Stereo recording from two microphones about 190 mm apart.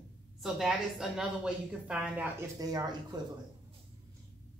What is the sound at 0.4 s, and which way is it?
A woman's voice, centre (ahead or behind).